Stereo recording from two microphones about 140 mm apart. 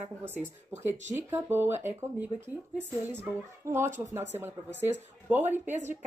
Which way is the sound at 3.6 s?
20° right (ahead or behind).